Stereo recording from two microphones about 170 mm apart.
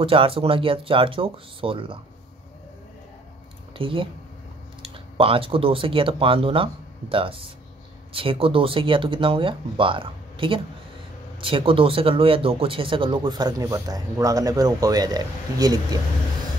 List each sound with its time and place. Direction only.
0.0 s speech: 30° right (ahead or behind)
3.7 s speech: 30° right (ahead or behind)